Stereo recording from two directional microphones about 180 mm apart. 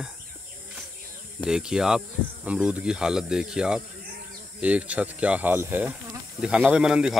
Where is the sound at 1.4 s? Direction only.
5° right (ahead or behind).